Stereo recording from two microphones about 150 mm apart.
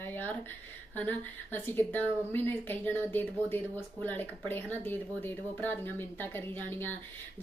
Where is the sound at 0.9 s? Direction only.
10° left (ahead or behind).